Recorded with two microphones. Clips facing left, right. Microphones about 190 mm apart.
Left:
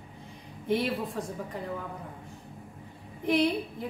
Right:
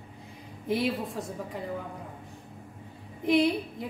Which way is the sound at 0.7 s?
Centre (ahead or behind).